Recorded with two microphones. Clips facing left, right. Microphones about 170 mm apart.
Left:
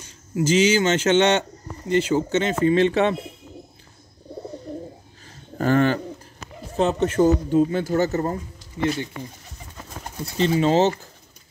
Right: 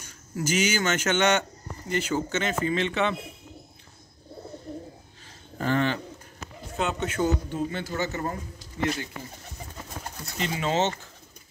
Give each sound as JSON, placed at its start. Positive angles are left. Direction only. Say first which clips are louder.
{"t": 0.0, "sound": "speech", "louder": "left 7 dB", "side_deg": 25}
{"t": 5.6, "sound": "speech", "louder": "left 6 dB", "side_deg": 45}
{"t": 10.2, "sound": "speech", "louder": "left 10 dB", "side_deg": 30}